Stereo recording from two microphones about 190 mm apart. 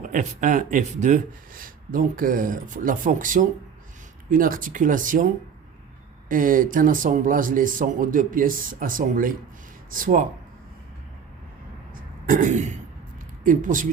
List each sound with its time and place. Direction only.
0.0 s speech: 40° right (ahead or behind)
12.3 s throat clearing: 40° right (ahead or behind)
13.4 s speech: 45° right (ahead or behind)